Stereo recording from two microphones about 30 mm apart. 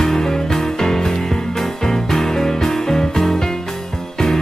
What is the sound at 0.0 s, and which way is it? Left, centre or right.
Music, centre.